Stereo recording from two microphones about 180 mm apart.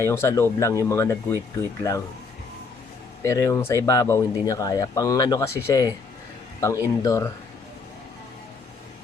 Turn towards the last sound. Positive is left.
turn(degrees=20)  # may be behind; listen again after turning